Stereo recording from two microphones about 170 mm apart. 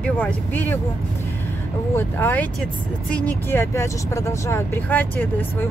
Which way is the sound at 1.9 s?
10° left (ahead or behind).